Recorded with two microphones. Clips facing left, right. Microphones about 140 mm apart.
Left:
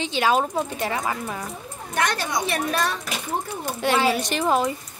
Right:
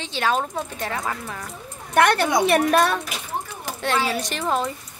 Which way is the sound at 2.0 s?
60° right (ahead or behind).